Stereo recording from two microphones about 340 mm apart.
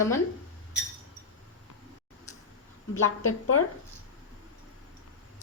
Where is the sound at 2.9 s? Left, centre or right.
Left.